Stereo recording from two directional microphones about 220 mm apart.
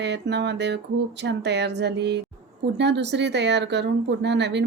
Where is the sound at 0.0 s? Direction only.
50° right (ahead or behind).